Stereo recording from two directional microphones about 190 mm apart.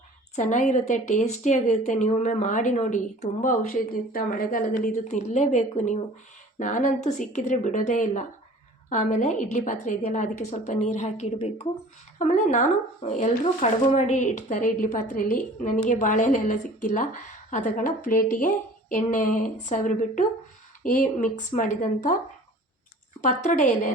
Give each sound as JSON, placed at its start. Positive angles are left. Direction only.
{"t": 0.3, "sound": "a woman's voice", "side_deg": 40}
{"t": 23.2, "sound": "a woman's voice", "side_deg": 40}